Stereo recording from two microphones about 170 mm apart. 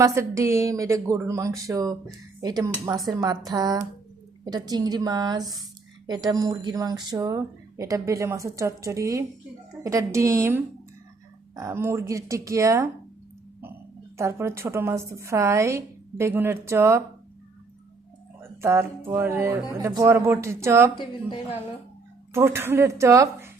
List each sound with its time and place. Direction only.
0.0 s speech: 15° right (ahead or behind)
14.2 s speech: 15° right (ahead or behind)
18.3 s speech: 15° right (ahead or behind)
20.9 s a woman's voice: 30° left (ahead or behind)
22.3 s speech: 15° right (ahead or behind)